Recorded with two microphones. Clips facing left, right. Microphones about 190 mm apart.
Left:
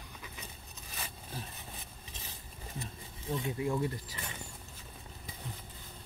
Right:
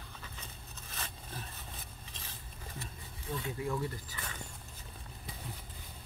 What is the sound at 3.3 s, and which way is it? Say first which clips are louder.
Speech: left 3 dB; 20° left (ahead or behind).